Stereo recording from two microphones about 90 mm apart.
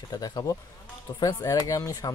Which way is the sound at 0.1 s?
45° left (ahead or behind).